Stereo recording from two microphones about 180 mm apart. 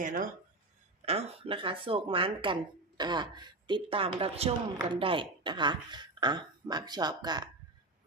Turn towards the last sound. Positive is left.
turn(degrees=-20)  # may be behind; listen again after turning